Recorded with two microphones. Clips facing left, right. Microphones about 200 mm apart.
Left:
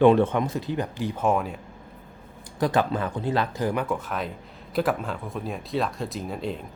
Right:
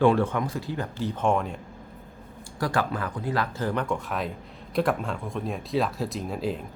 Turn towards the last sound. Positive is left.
turn(degrees=0)  # may be behind; listen again after turning